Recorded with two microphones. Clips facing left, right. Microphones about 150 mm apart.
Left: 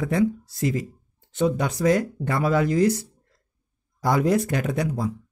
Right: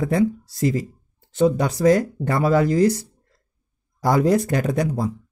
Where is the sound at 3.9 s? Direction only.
35° right (ahead or behind).